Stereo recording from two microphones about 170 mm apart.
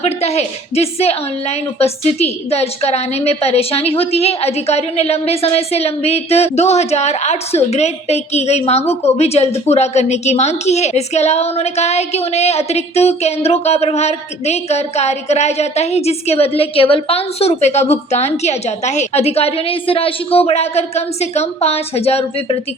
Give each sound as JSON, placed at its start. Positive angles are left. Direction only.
{"t": 0.0, "sound": "a woman's voice", "side_deg": 40}